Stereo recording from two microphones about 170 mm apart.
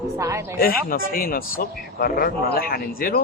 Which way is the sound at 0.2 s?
15° right (ahead or behind).